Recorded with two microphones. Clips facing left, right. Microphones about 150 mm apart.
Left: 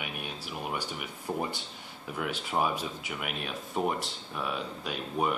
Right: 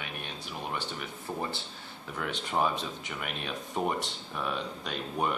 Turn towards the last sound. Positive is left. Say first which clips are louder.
# left 1 dB
turn(degrees=5)  # may be behind; listen again after turning